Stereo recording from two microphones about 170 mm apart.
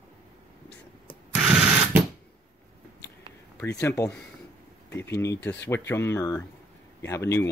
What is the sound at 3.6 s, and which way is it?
Speech, 20° left (ahead or behind).